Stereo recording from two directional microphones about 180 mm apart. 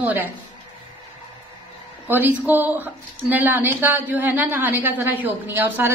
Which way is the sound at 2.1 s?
10° right (ahead or behind).